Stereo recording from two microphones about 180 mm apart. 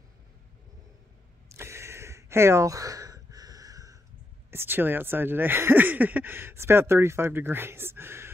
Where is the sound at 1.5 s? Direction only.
15° right (ahead or behind).